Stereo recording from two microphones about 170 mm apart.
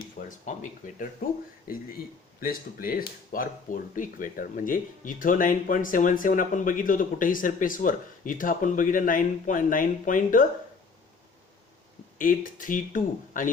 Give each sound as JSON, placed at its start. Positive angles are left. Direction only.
{"t": 0.3, "sound": "speech", "side_deg": 50}
{"t": 12.2, "sound": "speech", "side_deg": 55}